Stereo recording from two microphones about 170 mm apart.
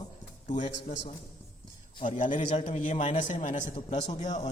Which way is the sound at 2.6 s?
45° left (ahead or behind).